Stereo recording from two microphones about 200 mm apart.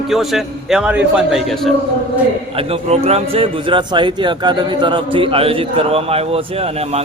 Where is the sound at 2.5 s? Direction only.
30° right (ahead or behind).